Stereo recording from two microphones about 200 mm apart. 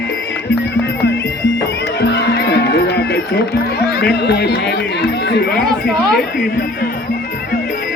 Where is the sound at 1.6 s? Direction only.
55° left (ahead or behind).